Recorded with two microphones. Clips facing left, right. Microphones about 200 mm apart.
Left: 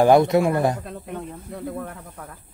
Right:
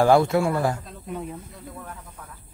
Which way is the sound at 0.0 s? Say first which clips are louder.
Left 3 dB; 20° left (ahead or behind).